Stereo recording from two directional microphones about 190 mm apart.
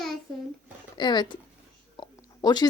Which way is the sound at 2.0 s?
20° left (ahead or behind).